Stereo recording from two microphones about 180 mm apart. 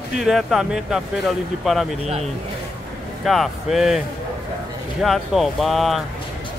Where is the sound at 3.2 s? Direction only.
Centre (ahead or behind).